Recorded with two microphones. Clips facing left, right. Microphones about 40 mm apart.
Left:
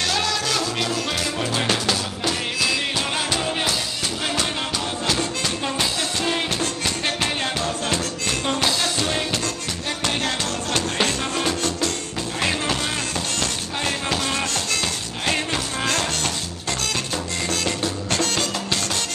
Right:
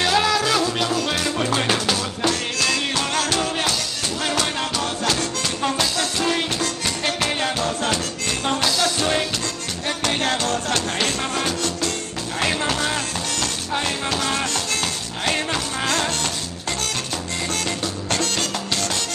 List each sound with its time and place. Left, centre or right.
0.0 s music: centre
2.6 s music: centre
7.1 s music: left
9.8 s music: right
14.2 s music: right
17.6 s music: left